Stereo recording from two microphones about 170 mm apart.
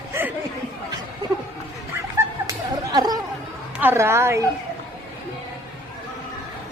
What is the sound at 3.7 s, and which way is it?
Speech, 15° right (ahead or behind).